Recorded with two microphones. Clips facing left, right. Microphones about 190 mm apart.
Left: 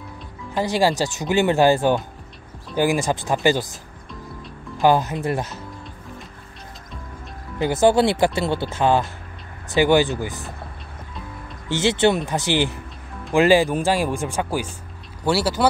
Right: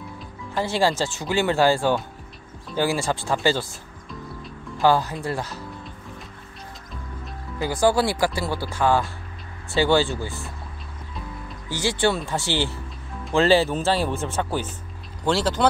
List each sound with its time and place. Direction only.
0.6 s speech: 15° left (ahead or behind)
4.1 s music: centre (ahead or behind)
4.8 s speech: 20° left (ahead or behind)
7.5 s speech: 20° left (ahead or behind)
11.7 s speech: 20° left (ahead or behind)